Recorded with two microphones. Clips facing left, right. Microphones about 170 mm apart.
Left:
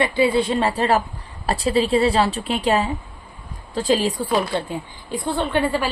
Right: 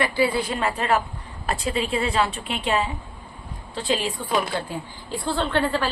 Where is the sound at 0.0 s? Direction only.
25° left (ahead or behind).